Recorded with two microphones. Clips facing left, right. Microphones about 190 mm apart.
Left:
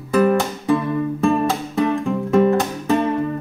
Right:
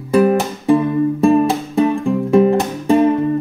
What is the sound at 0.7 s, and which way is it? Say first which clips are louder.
Music: right 6 dB; 35° right (ahead or behind).